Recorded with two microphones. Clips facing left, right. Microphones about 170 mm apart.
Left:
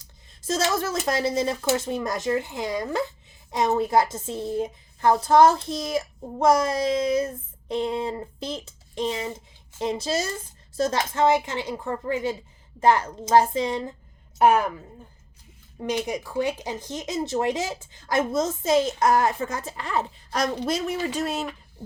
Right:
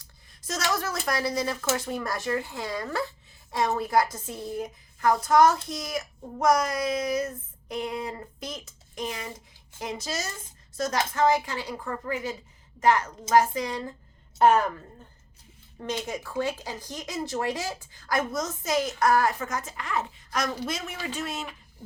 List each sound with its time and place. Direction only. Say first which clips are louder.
0.0 s a sound: left 7 dB; 25° left (ahead or behind)
1.0 s a woman's voice: left 3 dB; 25° left (ahead or behind)
14.3 s a woman's voice: left 1 dB; 10° left (ahead or behind); by 21.4 s 40° left (ahead or behind)